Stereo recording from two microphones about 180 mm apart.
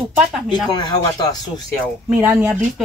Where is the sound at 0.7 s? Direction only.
25° left (ahead or behind).